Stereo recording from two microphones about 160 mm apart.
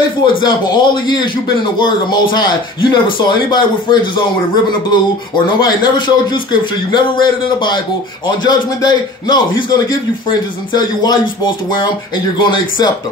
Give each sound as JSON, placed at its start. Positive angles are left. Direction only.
{"t": 0.4, "sound": "a man's voice", "side_deg": 30}
{"t": 10.7, "sound": "a man's voice", "side_deg": 25}